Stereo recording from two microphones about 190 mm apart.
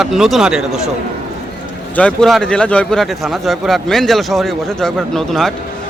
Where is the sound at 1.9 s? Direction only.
5° left (ahead or behind).